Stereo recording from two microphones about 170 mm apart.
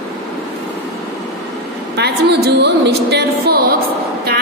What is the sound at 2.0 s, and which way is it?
A woman's voice, 75° right (ahead or behind).